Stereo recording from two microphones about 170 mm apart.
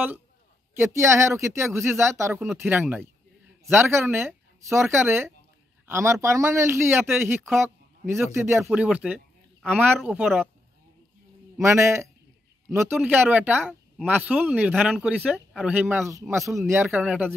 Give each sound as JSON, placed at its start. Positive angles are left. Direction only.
{"t": 0.7, "sound": "speech", "side_deg": -15}
{"t": 11.6, "sound": "speech", "side_deg": -15}